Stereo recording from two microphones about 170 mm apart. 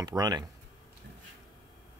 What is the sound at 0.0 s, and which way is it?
Speech, 20° right (ahead or behind).